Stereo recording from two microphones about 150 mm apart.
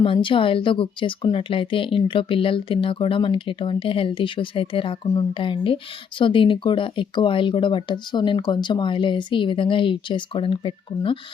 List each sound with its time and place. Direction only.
0.0 s speech: 35° left (ahead or behind)